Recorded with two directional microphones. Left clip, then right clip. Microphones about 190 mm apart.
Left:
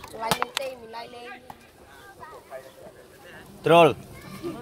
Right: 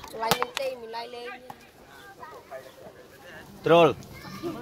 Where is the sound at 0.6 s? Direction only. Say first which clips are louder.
Right 2 dB; 60° right (ahead or behind).